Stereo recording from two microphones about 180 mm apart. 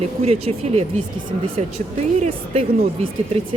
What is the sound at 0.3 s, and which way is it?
Speech, 35° right (ahead or behind).